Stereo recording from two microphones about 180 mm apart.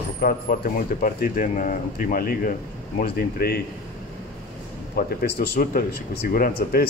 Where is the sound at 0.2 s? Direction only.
50° left (ahead or behind).